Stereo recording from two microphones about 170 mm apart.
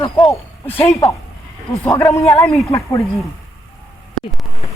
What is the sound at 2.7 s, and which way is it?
Speech, 20° left (ahead or behind).